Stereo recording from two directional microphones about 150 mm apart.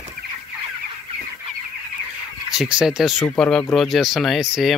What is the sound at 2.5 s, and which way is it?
Speech, 5° right (ahead or behind).